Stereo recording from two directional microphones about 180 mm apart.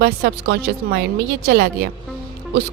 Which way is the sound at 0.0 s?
65° right (ahead or behind).